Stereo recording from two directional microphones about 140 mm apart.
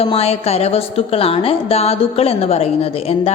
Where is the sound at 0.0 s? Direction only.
45° left (ahead or behind).